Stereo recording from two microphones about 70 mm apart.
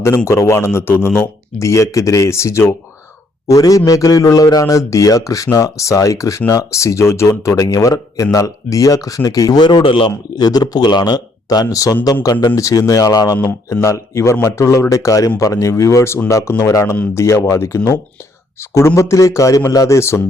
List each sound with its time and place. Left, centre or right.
0.3 s a man's voice: left
1.5 s a man's voice: left
3.4 s a man's voice: left
10.1 s speech: left
12.2 s speech: left
12.5 s speech: left
13.8 s a man's voice: left
18.9 s a man's voice: left
20.0 s a man's voice: left